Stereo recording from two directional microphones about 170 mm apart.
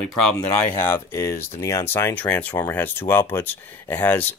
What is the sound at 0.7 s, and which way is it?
Speech, 15° left (ahead or behind).